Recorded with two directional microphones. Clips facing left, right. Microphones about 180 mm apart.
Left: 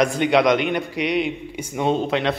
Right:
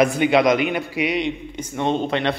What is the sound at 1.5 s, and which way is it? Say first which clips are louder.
Speech: left 2 dB; 10° left (ahead or behind).